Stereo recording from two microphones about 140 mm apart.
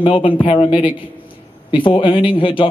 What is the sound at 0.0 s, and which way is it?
Speech, 40° left (ahead or behind).